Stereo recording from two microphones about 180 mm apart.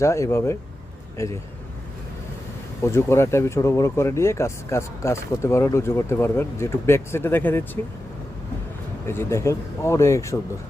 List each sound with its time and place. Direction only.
0.0 s speech: 15° left (ahead or behind)
2.8 s speech: 15° left (ahead or behind)
9.0 s speech: 15° left (ahead or behind)